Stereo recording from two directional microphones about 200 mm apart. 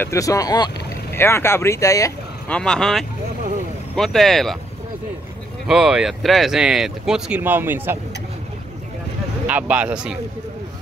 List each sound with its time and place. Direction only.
0.0 s speech: 15° left (ahead or behind)
5.7 s speech: 5° right (ahead or behind)
9.5 s speech: 5° right (ahead or behind)